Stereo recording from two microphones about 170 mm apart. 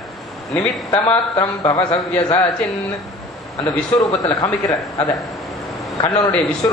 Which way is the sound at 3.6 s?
20° left (ahead or behind).